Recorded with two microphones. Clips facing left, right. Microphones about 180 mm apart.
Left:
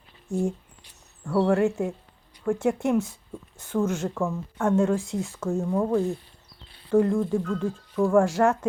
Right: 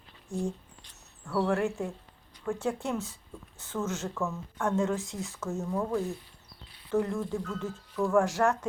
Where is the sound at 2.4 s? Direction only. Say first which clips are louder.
Left 7 dB; 15° left (ahead or behind).